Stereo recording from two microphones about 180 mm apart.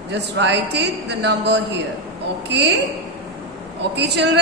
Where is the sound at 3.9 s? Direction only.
70° right (ahead or behind).